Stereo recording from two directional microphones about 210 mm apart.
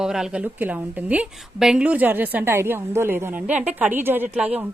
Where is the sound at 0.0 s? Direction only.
5° right (ahead or behind).